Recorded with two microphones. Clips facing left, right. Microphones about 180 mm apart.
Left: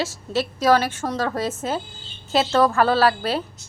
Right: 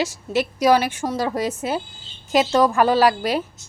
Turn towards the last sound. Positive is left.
turn(degrees=-15)  # may be behind; listen again after turning